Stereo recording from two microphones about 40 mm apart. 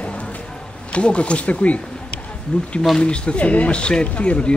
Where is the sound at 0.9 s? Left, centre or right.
Left.